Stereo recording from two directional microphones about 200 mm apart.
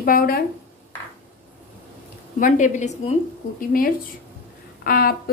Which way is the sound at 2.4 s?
40° left (ahead or behind).